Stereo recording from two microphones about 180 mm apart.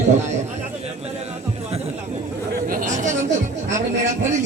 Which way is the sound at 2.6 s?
45° right (ahead or behind).